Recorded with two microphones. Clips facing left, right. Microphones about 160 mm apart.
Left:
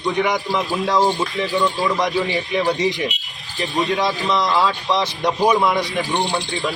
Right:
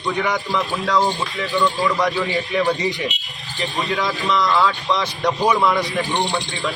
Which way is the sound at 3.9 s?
30° left (ahead or behind).